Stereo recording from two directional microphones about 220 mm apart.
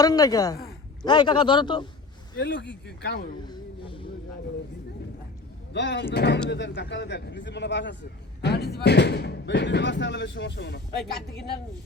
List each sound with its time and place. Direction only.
0.0 s a woman's voice: 15° left (ahead or behind)
2.4 s speech: 50° left (ahead or behind)
3.4 s a sound: 20° left (ahead or behind)
5.7 s speech: 55° left (ahead or behind)